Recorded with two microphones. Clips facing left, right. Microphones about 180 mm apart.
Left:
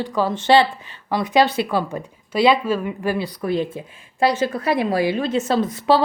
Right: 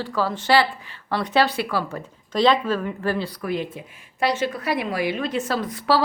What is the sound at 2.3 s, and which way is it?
Speech, 10° left (ahead or behind).